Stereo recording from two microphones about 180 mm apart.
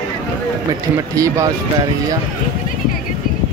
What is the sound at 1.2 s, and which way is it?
Speech, 15° right (ahead or behind).